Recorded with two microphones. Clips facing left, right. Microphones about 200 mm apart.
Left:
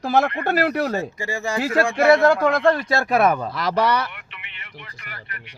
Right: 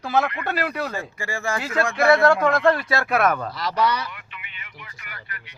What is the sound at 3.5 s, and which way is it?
Speech, 55° left (ahead or behind).